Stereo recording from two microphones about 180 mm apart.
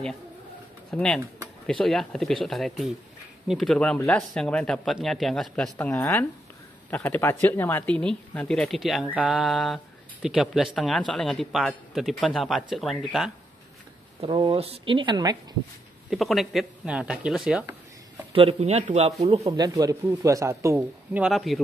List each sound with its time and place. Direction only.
0.9 s speech: 5° left (ahead or behind)
14.2 s speech: 30° right (ahead or behind)
16.1 s speech: centre (ahead or behind)
18.3 s speech: 30° right (ahead or behind)
19.6 s speech: 20° right (ahead or behind)
21.2 s speech: centre (ahead or behind)